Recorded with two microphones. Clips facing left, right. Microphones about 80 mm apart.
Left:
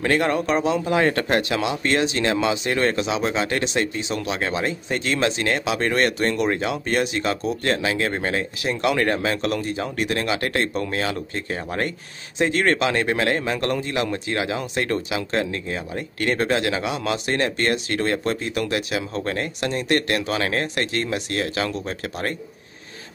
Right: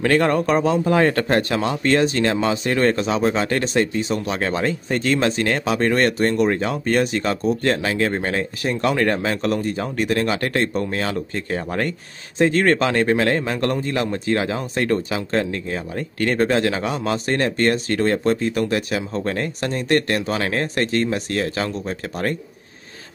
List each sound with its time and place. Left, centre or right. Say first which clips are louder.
0.0 s speech: right 3 dB; right